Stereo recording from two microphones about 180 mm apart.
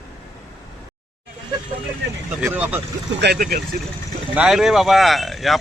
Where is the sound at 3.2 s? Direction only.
60° right (ahead or behind).